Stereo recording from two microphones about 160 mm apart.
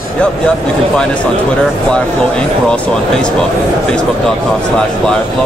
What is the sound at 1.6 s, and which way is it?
Speech, 5° left (ahead or behind).